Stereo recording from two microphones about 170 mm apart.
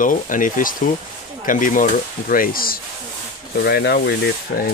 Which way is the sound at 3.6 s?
75° left (ahead or behind).